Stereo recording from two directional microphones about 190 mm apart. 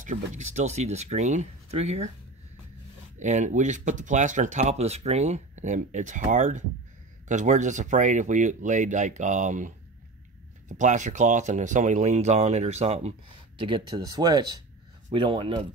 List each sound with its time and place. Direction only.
0.0 s speech: 40° right (ahead or behind)
3.2 s speech: 40° right (ahead or behind)